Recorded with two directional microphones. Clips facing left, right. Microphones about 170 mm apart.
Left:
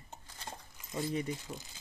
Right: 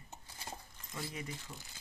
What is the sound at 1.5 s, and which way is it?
Speech, 20° left (ahead or behind).